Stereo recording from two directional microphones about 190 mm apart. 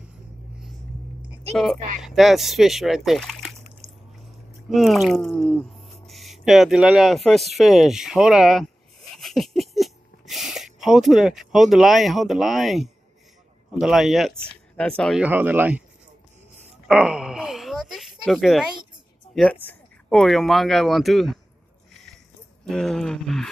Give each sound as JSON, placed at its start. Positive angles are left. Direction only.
{"t": 2.0, "sound": "speech", "side_deg": 0}
{"t": 3.8, "sound": "biting", "side_deg": -15}
{"t": 4.6, "sound": "speech", "side_deg": 0}
{"t": 16.8, "sound": "a sound", "side_deg": -5}
{"t": 19.3, "sound": "speech", "side_deg": 5}
{"t": 22.7, "sound": "speech", "side_deg": 5}